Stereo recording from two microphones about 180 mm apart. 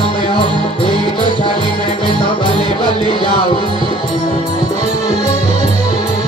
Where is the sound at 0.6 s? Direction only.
30° left (ahead or behind).